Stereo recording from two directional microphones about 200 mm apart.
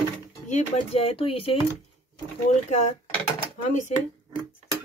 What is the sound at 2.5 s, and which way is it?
Speech, 35° left (ahead or behind).